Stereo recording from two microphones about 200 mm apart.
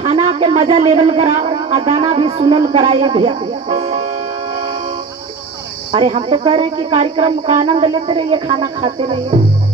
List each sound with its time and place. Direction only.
0.0 s a man's voice: 25° right (ahead or behind)
5.9 s a man's voice: 30° right (ahead or behind)